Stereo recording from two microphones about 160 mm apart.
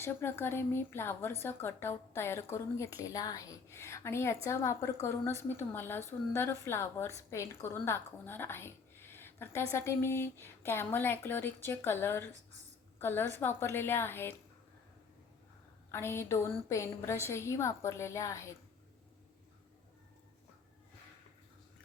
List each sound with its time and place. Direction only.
0.0 s a woman's voice: 15° left (ahead or behind)
15.9 s a woman's voice: 15° left (ahead or behind)